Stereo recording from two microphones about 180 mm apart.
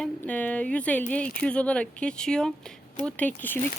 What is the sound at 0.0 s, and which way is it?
Speech, 5° left (ahead or behind).